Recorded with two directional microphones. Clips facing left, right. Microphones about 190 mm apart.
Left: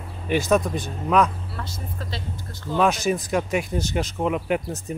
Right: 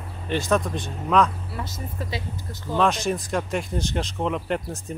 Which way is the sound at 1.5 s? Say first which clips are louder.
Right 2 dB; 10° right (ahead or behind).